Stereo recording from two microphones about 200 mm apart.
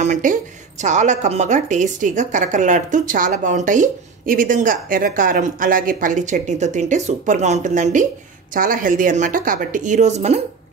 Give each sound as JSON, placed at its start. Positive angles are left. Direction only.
{"t": 0.0, "sound": "a woman's voice", "side_deg": -40}